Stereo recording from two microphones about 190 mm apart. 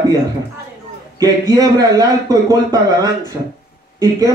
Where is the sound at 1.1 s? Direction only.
20° right (ahead or behind).